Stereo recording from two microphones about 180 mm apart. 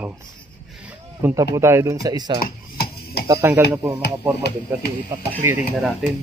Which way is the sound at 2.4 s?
60° left (ahead or behind).